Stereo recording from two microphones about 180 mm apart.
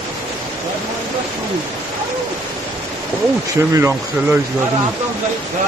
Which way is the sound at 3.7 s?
15° right (ahead or behind).